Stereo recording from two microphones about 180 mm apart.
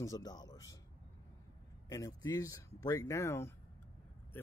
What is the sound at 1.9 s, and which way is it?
Speech, 20° left (ahead or behind).